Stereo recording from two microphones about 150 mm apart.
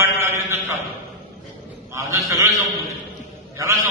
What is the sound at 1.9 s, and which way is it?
A man's voice, 20° right (ahead or behind).